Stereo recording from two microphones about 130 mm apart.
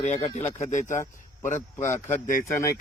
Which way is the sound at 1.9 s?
20° left (ahead or behind).